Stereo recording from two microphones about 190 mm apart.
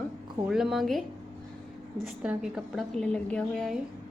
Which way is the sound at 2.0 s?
5° right (ahead or behind).